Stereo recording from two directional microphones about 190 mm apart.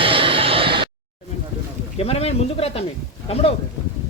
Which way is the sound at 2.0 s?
30° left (ahead or behind).